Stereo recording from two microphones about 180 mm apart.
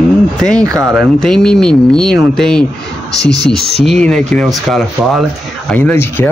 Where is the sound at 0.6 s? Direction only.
20° right (ahead or behind).